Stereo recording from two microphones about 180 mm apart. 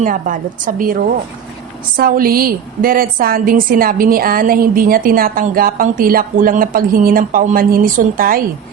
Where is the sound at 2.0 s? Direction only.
55° right (ahead or behind).